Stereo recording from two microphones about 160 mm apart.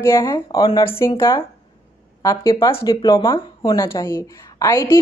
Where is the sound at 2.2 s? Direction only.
20° left (ahead or behind).